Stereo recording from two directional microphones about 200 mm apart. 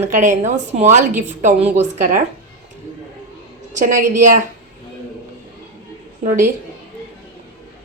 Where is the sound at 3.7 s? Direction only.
40° right (ahead or behind).